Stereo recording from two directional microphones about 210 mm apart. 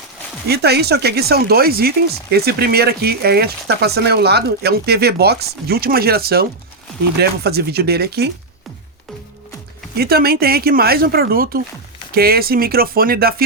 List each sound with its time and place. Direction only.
0.4 s speech: 50° right (ahead or behind)
10.0 s speech: 45° right (ahead or behind)